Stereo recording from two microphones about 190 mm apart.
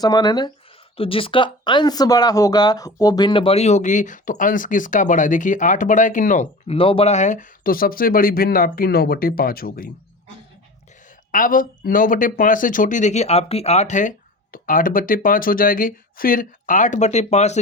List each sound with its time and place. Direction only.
0.0 s speech: 20° left (ahead or behind); by 9.9 s 50° left (ahead or behind)
11.3 s speech: 45° left (ahead or behind)